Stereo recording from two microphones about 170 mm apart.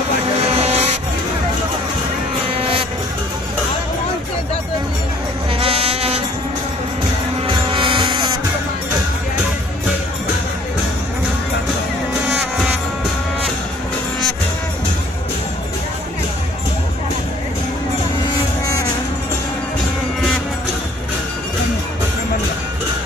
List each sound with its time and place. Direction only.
0.4 s vehicle: 40° right (ahead or behind)
2.5 s vehicle: 35° right (ahead or behind)
5.6 s insect: 35° right (ahead or behind)
7.4 s music: 30° right (ahead or behind)